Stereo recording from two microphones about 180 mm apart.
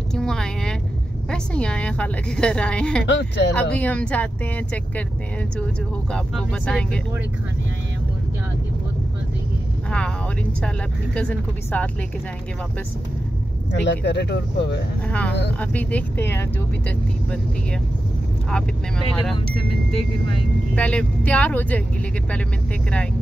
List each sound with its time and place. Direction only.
0.1 s vehicle: 5° left (ahead or behind)
1.3 s a woman's voice: 5° left (ahead or behind)
3.1 s speech: 75° left (ahead or behind)
3.7 s speech: 10° left (ahead or behind)
6.1 s a woman's voice: 5° left (ahead or behind)
9.8 s a sound: 5° left (ahead or behind)
11.1 s speech: 5° left (ahead or behind)
13.7 s speech: 75° left (ahead or behind)
15.0 s speech: 10° left (ahead or behind)
18.5 s a woman's voice: 5° left (ahead or behind)
20.7 s speech: 5° left (ahead or behind)